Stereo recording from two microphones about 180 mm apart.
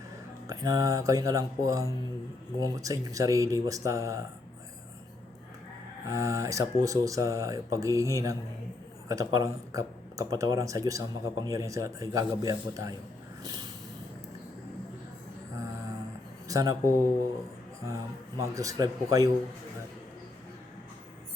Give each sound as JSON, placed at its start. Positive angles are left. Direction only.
{"t": 0.4, "sound": "speech", "side_deg": -20}
{"t": 6.1, "sound": "speech", "side_deg": -15}
{"t": 13.4, "sound": "vehicle", "side_deg": -20}
{"t": 16.5, "sound": "speech", "side_deg": -20}